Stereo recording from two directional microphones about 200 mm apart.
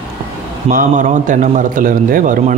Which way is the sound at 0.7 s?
40° right (ahead or behind).